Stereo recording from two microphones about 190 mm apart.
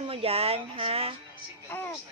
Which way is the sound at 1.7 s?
10° left (ahead or behind).